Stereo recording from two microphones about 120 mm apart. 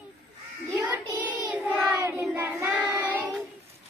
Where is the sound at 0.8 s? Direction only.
15° right (ahead or behind).